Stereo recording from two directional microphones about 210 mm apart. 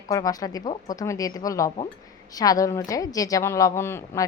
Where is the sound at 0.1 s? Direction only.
15° left (ahead or behind).